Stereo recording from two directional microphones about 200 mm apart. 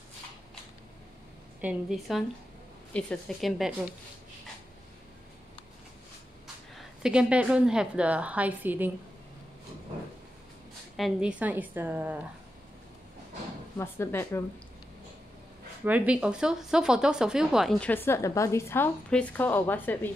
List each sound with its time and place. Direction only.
1.6 s speech: 5° right (ahead or behind)
6.4 s a woman's voice: 5° right (ahead or behind)
11.0 s a woman's voice: 5° right (ahead or behind)
13.7 s speech: 10° left (ahead or behind)
15.8 s speech: 5° right (ahead or behind); by 20.1 s 10° left (ahead or behind)